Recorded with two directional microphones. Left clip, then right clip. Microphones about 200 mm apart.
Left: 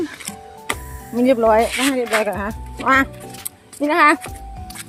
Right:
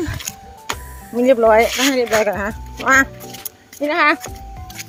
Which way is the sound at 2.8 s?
Centre (ahead or behind).